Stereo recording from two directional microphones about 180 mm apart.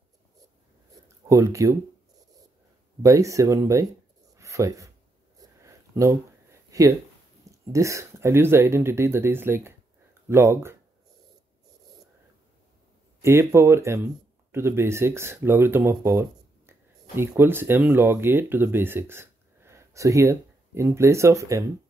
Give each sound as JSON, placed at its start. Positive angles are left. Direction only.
{"t": 1.3, "sound": "speech", "side_deg": -15}
{"t": 3.0, "sound": "speech", "side_deg": -20}
{"t": 4.4, "sound": "a sound", "side_deg": -15}
{"t": 7.7, "sound": "speech", "side_deg": -15}
{"t": 13.2, "sound": "speech", "side_deg": -15}